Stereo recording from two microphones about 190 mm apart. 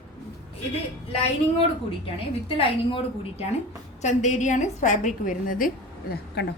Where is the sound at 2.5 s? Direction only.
30° left (ahead or behind).